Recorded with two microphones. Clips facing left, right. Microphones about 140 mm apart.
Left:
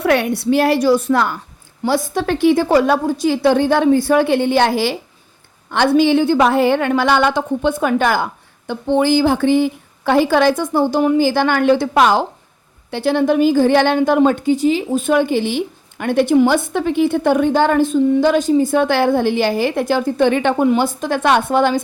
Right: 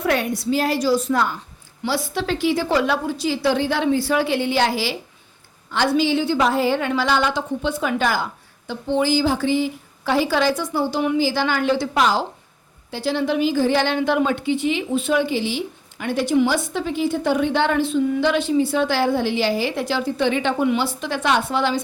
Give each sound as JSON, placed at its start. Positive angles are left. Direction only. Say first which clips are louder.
{"t": 0.0, "sound": "a woman's voice", "louder": "left 5 dB", "side_deg": 65}
{"t": 1.8, "sound": "a woman's voice", "louder": "left 6 dB", "side_deg": 45}